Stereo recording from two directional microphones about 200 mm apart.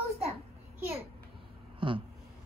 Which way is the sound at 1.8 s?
25° right (ahead or behind).